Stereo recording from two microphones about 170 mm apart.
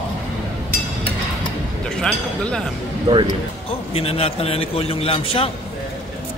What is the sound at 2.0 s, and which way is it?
Speech, 5° left (ahead or behind).